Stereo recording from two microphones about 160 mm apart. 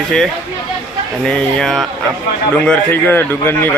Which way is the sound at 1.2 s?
5° left (ahead or behind).